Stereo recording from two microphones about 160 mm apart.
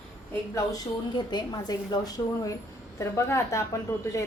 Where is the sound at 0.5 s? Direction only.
25° left (ahead or behind).